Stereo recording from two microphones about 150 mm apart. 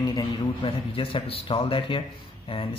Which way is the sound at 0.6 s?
40° left (ahead or behind).